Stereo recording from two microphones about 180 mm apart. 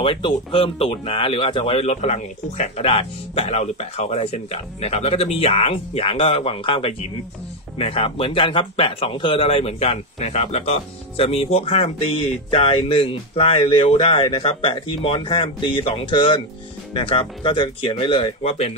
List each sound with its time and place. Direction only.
0.0 s speech: 30° left (ahead or behind)